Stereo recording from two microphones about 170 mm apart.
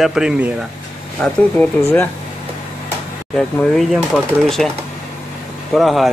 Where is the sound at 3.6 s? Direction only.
Centre (ahead or behind).